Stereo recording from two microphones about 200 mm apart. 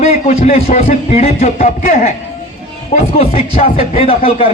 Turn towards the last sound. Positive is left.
turn(degrees=30)  # may be behind; listen again after turning